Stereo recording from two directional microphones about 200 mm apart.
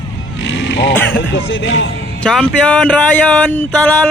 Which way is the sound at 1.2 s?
65° left (ahead or behind).